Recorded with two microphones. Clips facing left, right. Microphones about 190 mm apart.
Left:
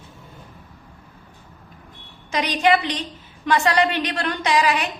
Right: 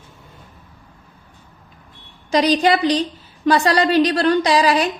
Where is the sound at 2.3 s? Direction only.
35° right (ahead or behind).